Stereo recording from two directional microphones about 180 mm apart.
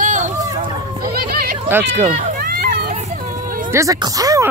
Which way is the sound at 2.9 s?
40° right (ahead or behind).